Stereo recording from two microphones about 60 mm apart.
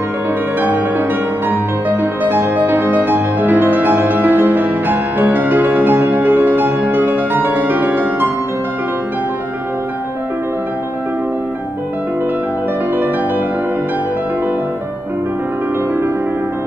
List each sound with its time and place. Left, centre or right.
0.6 s music: right